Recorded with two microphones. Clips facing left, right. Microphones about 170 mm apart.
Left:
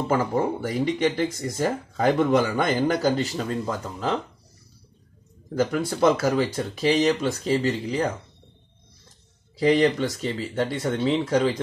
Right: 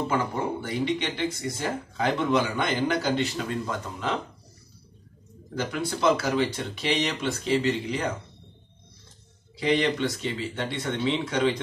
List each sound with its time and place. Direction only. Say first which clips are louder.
0.6 s speech: left 4 dB; 45° left (ahead or behind)
5.5 s speech: left 5 dB; 40° left (ahead or behind)
9.6 s speech: left 4 dB; 40° left (ahead or behind)